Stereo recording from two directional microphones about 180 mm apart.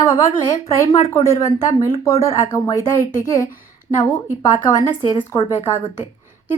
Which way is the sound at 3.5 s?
50° left (ahead or behind).